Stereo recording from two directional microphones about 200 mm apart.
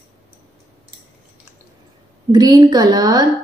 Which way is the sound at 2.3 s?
15° right (ahead or behind).